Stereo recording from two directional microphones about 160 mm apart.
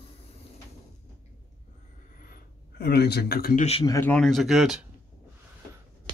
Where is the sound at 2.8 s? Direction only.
85° left.